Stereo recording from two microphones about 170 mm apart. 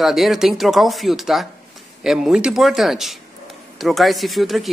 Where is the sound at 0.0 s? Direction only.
Centre (ahead or behind).